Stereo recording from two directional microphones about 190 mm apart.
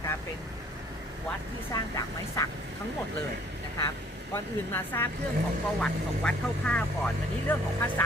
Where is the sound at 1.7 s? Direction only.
20° left (ahead or behind).